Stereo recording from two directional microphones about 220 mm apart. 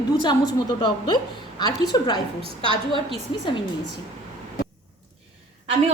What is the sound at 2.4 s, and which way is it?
Speech, 20° right (ahead or behind).